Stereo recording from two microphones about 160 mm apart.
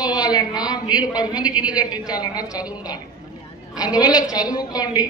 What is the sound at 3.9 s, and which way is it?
A man's voice, 25° left (ahead or behind).